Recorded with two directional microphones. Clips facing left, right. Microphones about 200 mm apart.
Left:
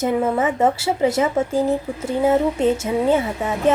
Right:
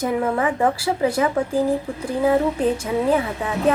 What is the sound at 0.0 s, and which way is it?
Speech, 25° left (ahead or behind).